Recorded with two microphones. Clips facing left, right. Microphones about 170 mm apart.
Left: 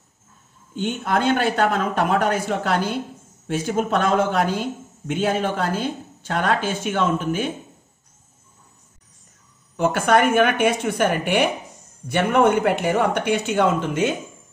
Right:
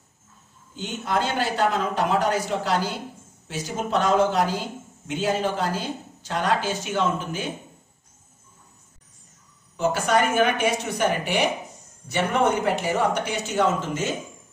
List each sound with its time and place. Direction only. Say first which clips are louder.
0.7 s speech: left 4 dB; 60° left (ahead or behind)
9.8 s speech: left 4 dB; 55° left (ahead or behind)